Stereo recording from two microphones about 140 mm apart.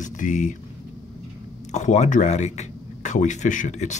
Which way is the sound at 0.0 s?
65° left (ahead or behind).